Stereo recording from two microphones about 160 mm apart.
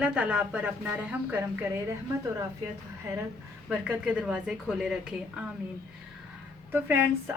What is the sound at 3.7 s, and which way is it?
A woman's voice, 10° right (ahead or behind).